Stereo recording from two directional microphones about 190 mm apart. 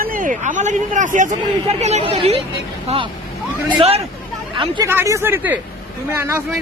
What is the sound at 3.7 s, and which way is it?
Speech, 30° right (ahead or behind).